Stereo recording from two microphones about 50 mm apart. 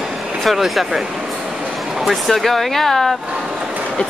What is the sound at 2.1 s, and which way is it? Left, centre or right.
Speech, centre.